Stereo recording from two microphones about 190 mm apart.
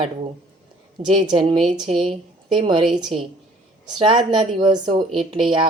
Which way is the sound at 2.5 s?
25° right (ahead or behind).